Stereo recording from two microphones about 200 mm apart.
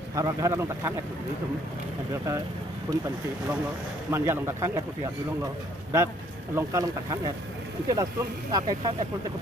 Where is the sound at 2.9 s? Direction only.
20° right (ahead or behind).